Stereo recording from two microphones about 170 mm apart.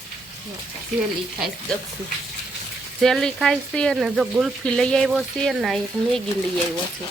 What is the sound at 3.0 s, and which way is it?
Speech, centre (ahead or behind).